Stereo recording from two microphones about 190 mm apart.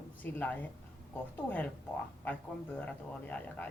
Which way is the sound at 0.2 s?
10° left (ahead or behind).